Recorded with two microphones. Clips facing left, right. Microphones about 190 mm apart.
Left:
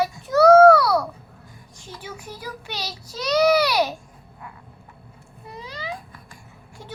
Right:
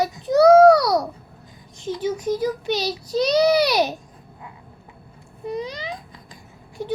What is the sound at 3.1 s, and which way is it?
Child singing, 15° right (ahead or behind).